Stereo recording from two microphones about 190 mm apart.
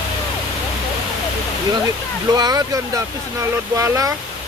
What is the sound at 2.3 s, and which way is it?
Speech, 20° right (ahead or behind).